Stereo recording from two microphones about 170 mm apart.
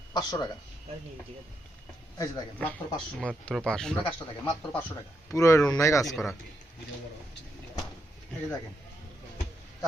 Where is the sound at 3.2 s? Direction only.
5° left (ahead or behind).